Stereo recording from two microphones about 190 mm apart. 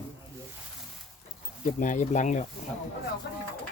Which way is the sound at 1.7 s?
40° left (ahead or behind).